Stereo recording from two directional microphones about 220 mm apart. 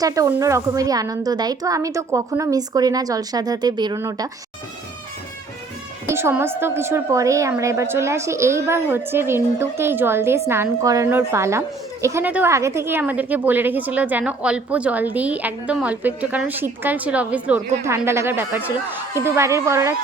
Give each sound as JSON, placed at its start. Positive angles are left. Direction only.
{"t": 0.0, "sound": "a woman's voice", "side_deg": -15}
{"t": 6.1, "sound": "a woman's voice", "side_deg": -10}